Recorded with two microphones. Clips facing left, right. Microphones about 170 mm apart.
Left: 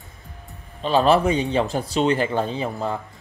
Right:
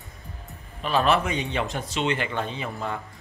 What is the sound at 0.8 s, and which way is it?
Speech, 30° left (ahead or behind).